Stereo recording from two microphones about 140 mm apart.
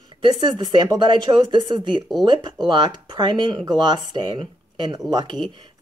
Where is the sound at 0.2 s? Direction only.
35° right (ahead or behind).